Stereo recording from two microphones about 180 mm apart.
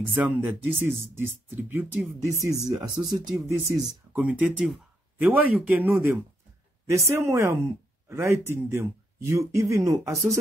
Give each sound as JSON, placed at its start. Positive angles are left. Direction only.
{"t": 0.1, "sound": "speech", "side_deg": -10}
{"t": 2.4, "sound": "speech", "side_deg": -20}
{"t": 3.3, "sound": "speech", "side_deg": -5}